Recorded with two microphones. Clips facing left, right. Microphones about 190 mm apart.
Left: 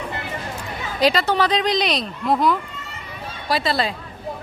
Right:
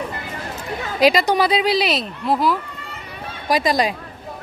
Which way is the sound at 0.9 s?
10° right (ahead or behind).